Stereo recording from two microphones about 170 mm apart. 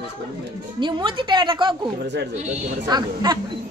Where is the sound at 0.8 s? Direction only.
25° right (ahead or behind).